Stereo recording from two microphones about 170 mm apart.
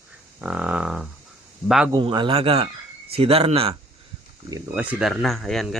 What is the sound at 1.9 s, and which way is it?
Speech, 25° right (ahead or behind).